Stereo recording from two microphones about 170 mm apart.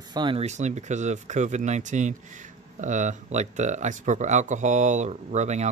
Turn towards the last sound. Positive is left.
turn(degrees=-40)  # may be behind; listen again after turning